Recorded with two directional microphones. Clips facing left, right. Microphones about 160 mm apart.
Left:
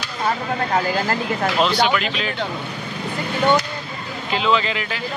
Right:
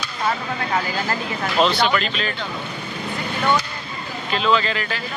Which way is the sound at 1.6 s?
10° left (ahead or behind).